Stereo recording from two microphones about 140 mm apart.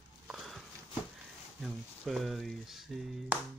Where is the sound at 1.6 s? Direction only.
Centre (ahead or behind).